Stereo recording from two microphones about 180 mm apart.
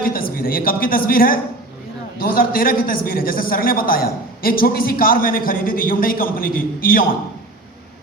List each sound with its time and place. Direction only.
0.0 s a man's voice: 55° left (ahead or behind)